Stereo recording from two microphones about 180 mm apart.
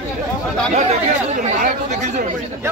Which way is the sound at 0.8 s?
40° right (ahead or behind).